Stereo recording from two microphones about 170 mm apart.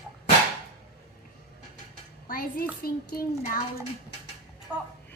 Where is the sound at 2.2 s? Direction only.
55° left (ahead or behind).